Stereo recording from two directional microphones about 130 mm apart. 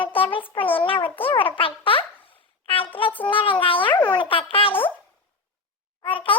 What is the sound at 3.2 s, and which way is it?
Music, 40° left (ahead or behind).